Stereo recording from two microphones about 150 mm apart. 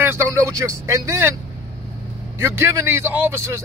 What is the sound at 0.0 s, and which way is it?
A man's voice, 15° right (ahead or behind).